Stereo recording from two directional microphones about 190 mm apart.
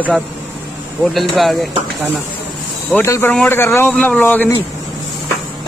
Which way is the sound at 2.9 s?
10° left (ahead or behind).